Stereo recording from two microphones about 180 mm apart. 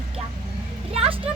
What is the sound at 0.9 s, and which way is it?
Speech, 35° right (ahead or behind).